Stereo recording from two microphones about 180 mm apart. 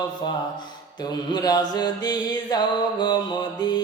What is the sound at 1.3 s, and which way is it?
Mantra, 20° left (ahead or behind).